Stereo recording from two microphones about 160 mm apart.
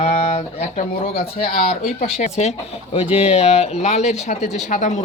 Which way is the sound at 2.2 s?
45° left (ahead or behind).